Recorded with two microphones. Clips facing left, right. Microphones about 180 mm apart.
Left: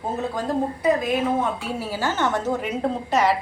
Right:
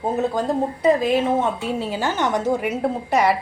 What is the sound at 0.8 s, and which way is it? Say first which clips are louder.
A woman's voice: right 5 dB; 25° right (ahead or behind).